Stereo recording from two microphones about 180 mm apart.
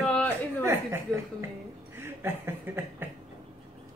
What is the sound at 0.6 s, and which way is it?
Speech, 15° right (ahead or behind).